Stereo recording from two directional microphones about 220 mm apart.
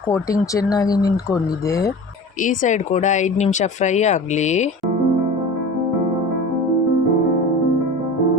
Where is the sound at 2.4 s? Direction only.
35° left (ahead or behind).